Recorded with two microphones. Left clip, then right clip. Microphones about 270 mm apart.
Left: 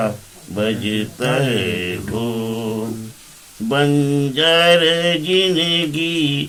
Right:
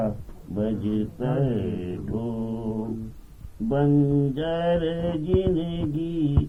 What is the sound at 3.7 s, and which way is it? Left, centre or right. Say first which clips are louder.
Mantra: left 6 dB; left.